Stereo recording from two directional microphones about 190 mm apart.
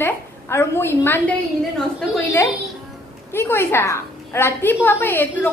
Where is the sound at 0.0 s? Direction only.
15° left (ahead or behind).